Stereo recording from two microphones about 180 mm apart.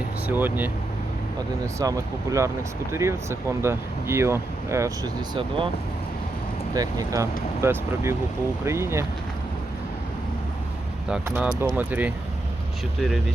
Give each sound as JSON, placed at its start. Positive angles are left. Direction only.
{"t": 0.3, "sound": "speech", "side_deg": -10}
{"t": 6.7, "sound": "speech", "side_deg": -20}
{"t": 11.3, "sound": "speech", "side_deg": -10}